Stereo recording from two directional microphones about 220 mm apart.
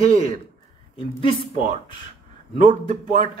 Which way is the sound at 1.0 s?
25° left (ahead or behind).